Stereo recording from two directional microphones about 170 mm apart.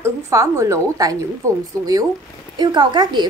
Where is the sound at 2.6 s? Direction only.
25° right (ahead or behind).